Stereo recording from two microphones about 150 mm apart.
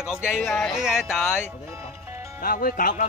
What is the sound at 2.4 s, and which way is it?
Speech, 70° left (ahead or behind).